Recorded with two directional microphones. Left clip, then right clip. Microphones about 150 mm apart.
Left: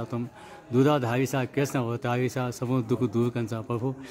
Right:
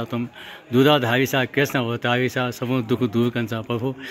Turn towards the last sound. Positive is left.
turn(degrees=-10)  # may be behind; listen again after turning